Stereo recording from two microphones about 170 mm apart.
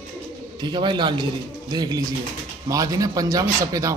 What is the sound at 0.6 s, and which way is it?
A man's voice, 25° right (ahead or behind).